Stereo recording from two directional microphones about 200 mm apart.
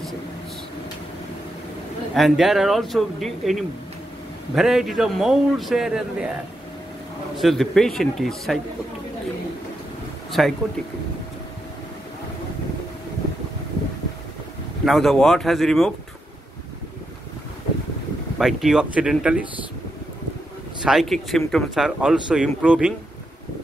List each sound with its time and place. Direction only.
2.1 s speech: centre (ahead or behind)
7.3 s speech: centre (ahead or behind)
10.4 s speech: centre (ahead or behind)
14.9 s speech: centre (ahead or behind)
18.4 s speech: centre (ahead or behind)
20.8 s speech: centre (ahead or behind)